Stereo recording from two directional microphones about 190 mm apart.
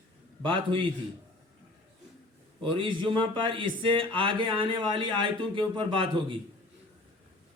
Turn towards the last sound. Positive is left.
turn(degrees=-25)  # may be behind; listen again after turning